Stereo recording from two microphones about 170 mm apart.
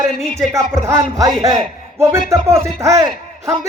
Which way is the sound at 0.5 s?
15° right (ahead or behind).